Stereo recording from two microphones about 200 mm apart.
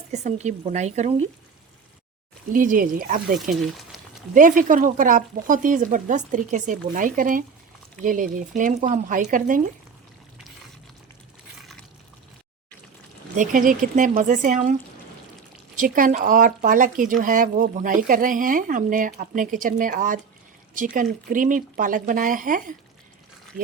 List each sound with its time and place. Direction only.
0.1 s speech: 35° right (ahead or behind)
2.5 s speech: 45° right (ahead or behind)
3.5 s speech: centre (ahead or behind)
4.4 s speech: 40° right (ahead or behind)
13.3 s speech: 40° right (ahead or behind)